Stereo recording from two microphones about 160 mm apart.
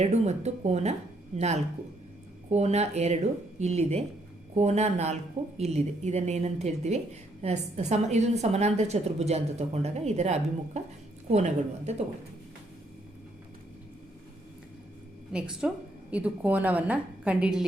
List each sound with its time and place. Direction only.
0.0 s a woman's voice: 45° right (ahead or behind)
2.5 s a woman's voice: 45° right (ahead or behind)
15.3 s a woman's voice: 5° right (ahead or behind)